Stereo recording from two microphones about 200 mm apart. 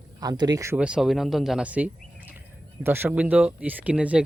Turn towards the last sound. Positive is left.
turn(degrees=-5)  # may be behind; listen again after turning